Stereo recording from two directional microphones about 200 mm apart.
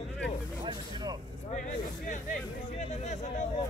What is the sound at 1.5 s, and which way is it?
Speech, 40° left (ahead or behind).